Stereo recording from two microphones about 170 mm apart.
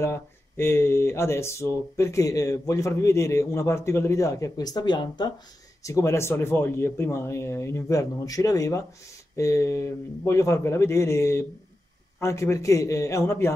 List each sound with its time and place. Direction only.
0.0 s speech: 15° left (ahead or behind)